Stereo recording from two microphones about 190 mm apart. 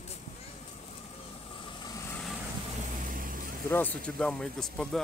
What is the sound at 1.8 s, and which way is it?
Vehicle, 15° left (ahead or behind).